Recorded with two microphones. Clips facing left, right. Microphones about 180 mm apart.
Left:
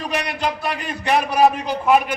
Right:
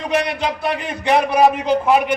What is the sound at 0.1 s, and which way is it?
Speech, 20° right (ahead or behind).